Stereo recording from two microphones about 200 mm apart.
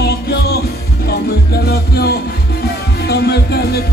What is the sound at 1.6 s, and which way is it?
Music, 50° left (ahead or behind).